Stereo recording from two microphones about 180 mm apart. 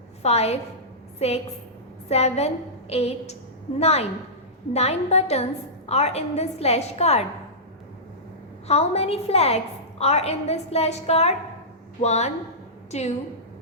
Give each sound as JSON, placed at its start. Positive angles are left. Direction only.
{"t": 0.2, "sound": "a woman's voice", "side_deg": 35}
{"t": 8.6, "sound": "a woman's voice", "side_deg": 35}